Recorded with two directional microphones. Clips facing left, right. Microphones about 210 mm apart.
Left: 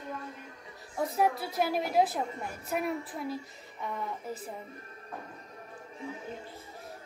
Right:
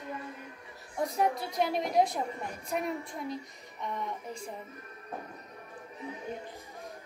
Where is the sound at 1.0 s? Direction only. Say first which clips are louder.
Left 1 dB; 5° left (ahead or behind).